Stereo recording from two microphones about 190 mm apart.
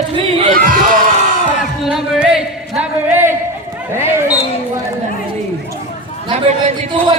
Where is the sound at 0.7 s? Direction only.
45° right (ahead or behind).